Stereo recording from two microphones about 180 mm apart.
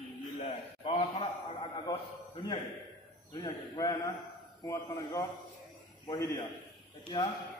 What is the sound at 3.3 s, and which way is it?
A man's voice, 20° left (ahead or behind).